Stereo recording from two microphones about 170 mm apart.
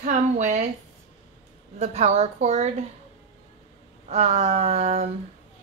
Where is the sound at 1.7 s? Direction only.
40° right (ahead or behind).